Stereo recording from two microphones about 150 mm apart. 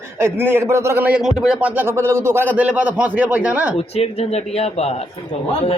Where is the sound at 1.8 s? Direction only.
15° right (ahead or behind).